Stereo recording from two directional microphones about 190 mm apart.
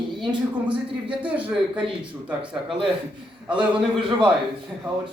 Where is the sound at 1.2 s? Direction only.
5° right (ahead or behind).